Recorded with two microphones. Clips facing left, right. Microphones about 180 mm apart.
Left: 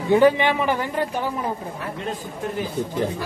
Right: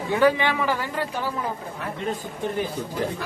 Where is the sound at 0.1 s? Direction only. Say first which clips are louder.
Left 4 dB; 20° left (ahead or behind).